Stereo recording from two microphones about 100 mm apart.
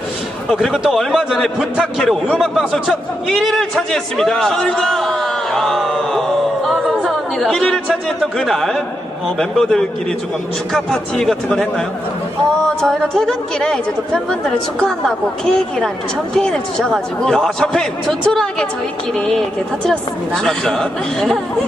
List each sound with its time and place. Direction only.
0.5 s a man's voice: centre (ahead or behind)
12.8 s a woman's voice: 5° left (ahead or behind)